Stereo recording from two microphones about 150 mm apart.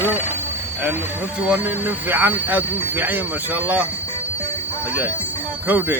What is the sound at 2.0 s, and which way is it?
Speech, 15° right (ahead or behind).